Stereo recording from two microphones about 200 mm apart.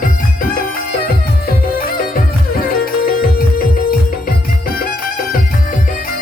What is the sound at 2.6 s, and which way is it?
Music, 45° left (ahead or behind).